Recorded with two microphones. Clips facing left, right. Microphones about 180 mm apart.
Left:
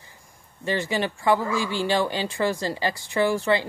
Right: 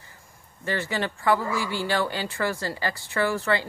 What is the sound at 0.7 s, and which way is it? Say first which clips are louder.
Speech: left 3 dB; 15° left (ahead or behind).